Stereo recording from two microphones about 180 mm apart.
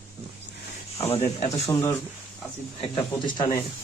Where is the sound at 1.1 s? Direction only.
35° left (ahead or behind).